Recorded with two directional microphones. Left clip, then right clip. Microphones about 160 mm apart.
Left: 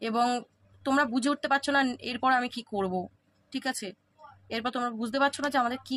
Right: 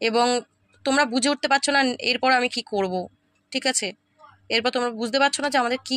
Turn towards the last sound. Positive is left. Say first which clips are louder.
# right 5 dB
turn(degrees=-20)  # may be behind; listen again after turning